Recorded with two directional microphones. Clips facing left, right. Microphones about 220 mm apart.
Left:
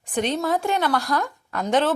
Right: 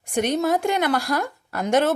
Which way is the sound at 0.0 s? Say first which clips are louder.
Right 1 dB; 10° right (ahead or behind).